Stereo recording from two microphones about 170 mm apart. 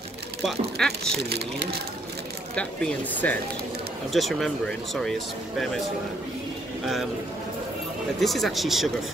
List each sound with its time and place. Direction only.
0.4 s speech: centre (ahead or behind)
1.3 s speech: 75° right (ahead or behind)
2.5 s speech: 5° left (ahead or behind)
6.8 s speech: centre (ahead or behind)
8.2 s speech: centre (ahead or behind)